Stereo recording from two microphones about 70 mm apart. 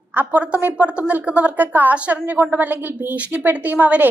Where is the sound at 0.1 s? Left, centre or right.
Right.